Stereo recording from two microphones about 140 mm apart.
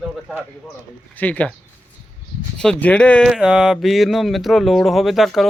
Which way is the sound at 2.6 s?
10° left (ahead or behind).